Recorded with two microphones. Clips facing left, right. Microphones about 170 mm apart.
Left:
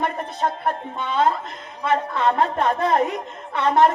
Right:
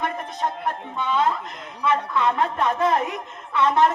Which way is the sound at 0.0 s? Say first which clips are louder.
Left 3 dB; 40° left (ahead or behind).